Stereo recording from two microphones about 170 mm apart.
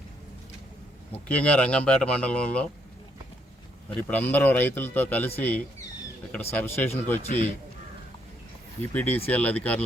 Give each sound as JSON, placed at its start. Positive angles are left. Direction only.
{"t": 1.1, "sound": "speech", "side_deg": 10}
{"t": 3.8, "sound": "speech", "side_deg": 10}
{"t": 7.2, "sound": "a man's voice", "side_deg": 40}
{"t": 8.8, "sound": "speech", "side_deg": 10}